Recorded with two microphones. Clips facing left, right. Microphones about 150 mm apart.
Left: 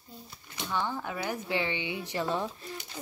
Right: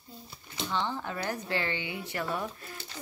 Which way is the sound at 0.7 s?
10° left (ahead or behind).